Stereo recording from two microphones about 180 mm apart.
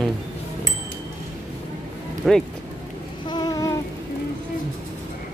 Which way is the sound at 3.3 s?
20° left (ahead or behind).